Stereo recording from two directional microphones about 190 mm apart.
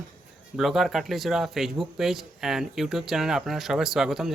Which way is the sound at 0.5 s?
Centre (ahead or behind).